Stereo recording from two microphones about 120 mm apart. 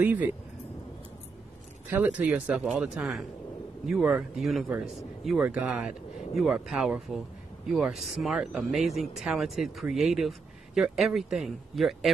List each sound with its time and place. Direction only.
0.0 s speech: 15° right (ahead or behind)
1.9 s speech: 10° right (ahead or behind)